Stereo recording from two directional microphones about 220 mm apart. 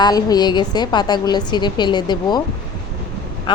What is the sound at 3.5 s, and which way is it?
Speech, 20° left (ahead or behind).